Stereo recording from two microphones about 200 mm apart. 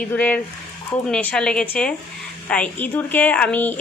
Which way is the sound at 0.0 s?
5° left (ahead or behind).